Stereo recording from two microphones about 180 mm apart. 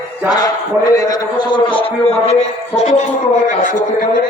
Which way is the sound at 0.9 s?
20° left (ahead or behind).